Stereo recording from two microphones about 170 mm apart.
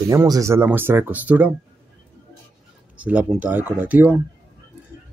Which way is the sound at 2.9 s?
5° right (ahead or behind).